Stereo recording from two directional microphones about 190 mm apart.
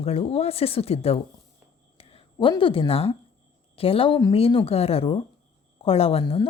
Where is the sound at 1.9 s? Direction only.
30° left (ahead or behind).